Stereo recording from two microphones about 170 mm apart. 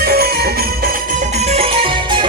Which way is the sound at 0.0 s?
65° right (ahead or behind).